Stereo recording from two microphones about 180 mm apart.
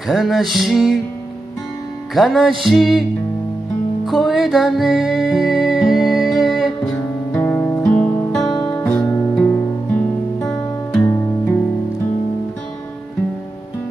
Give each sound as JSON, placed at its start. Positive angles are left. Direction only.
{"t": 0.1, "sound": "music", "side_deg": 0}
{"t": 2.1, "sound": "music", "side_deg": 0}
{"t": 7.3, "sound": "guitar", "side_deg": 10}
{"t": 8.5, "sound": "music", "side_deg": 15}
{"t": 10.9, "sound": "music", "side_deg": 10}